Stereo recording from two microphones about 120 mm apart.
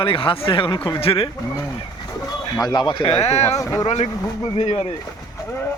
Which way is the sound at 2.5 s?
35° left (ahead or behind).